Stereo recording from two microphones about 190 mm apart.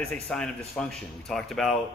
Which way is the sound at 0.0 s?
5° left (ahead or behind).